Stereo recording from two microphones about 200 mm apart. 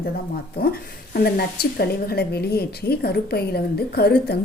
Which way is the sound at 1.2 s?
50° left (ahead or behind).